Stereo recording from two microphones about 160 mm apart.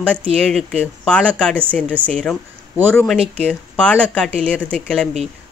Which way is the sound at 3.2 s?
40° right (ahead or behind).